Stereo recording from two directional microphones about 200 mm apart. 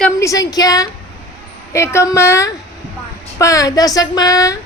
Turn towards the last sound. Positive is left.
turn(degrees=15)  # may be behind; listen again after turning